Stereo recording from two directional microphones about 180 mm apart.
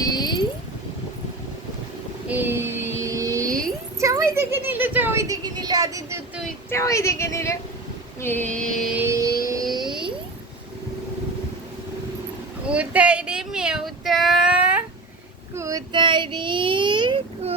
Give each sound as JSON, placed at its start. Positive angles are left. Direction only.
{"t": 0.0, "sound": "a sound", "side_deg": 20}
{"t": 2.2, "sound": "female singing", "side_deg": -10}
{"t": 3.0, "sound": "vehicle", "side_deg": -20}
{"t": 4.0, "sound": "speech", "side_deg": -15}
{"t": 6.7, "sound": "a woman's voice", "side_deg": 15}
{"t": 9.0, "sound": "vehicle", "side_deg": -15}
{"t": 9.7, "sound": "a sound", "side_deg": -25}
{"t": 12.6, "sound": "child singing", "side_deg": -5}
{"t": 15.5, "sound": "child singing", "side_deg": -20}